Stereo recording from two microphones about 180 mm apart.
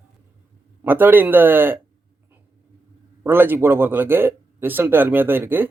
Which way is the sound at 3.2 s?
10° right (ahead or behind).